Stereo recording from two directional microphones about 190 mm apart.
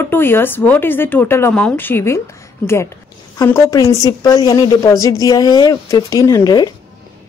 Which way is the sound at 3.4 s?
15° left (ahead or behind).